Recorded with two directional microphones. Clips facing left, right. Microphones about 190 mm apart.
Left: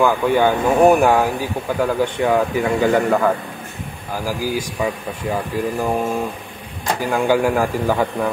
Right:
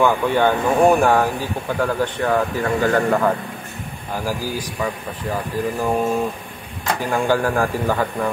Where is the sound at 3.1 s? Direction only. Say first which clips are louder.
Left 1 dB; centre (ahead or behind).